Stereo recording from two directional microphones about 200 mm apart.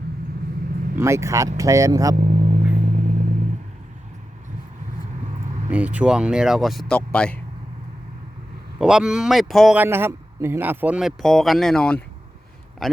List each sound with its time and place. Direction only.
0.9 s speech: 15° right (ahead or behind)
2.1 s vehicle: 35° right (ahead or behind)
5.7 s a man's voice: 5° right (ahead or behind)
8.8 s a man's voice: 5° right (ahead or behind)